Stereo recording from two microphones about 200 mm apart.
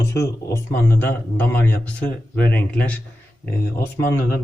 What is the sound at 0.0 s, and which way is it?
Speech, 15° left (ahead or behind).